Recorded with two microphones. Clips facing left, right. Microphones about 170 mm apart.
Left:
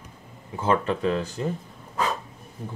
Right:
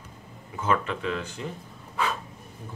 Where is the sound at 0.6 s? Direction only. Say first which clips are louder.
Left 4 dB; 35° left (ahead or behind).